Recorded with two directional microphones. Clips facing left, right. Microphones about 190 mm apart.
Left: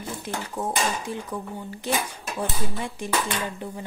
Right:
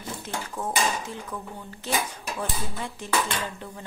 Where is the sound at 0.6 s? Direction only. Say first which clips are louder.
Even; 10° left (ahead or behind).